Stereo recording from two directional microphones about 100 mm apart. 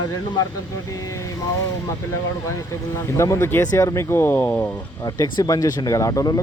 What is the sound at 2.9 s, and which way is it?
Speech, 30° left (ahead or behind).